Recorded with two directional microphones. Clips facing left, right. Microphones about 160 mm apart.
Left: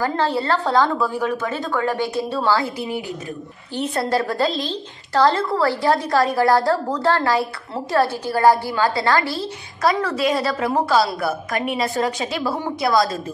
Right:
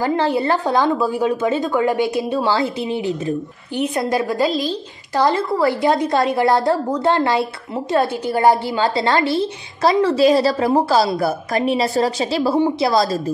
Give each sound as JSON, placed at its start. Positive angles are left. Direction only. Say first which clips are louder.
{"t": 0.0, "sound": "a woman's voice", "louder": "right 3 dB", "side_deg": -15}